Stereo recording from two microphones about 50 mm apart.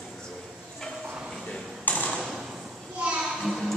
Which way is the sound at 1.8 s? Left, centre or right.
Left.